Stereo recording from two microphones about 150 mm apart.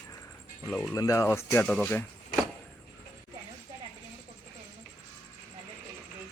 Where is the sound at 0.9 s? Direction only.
20° left (ahead or behind).